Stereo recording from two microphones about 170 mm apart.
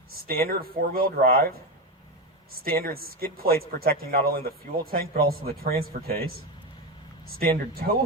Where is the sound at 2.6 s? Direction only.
60° right (ahead or behind).